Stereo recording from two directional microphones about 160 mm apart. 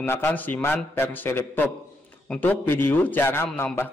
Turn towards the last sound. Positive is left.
turn(degrees=10)  # may be behind; listen again after turning